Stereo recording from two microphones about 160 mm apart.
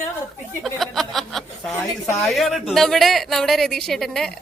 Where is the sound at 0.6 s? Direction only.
Centre (ahead or behind).